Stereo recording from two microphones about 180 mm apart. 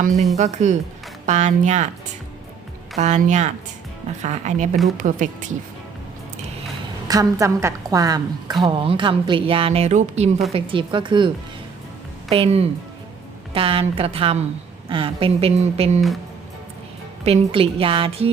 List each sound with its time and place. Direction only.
0.3 s a woman's voice: 40° right (ahead or behind)
3.0 s a woman's voice: 40° right (ahead or behind)
7.1 s a woman's voice: 20° right (ahead or behind)
12.3 s a woman's voice: 35° right (ahead or behind)
17.2 s a woman's voice: 35° right (ahead or behind)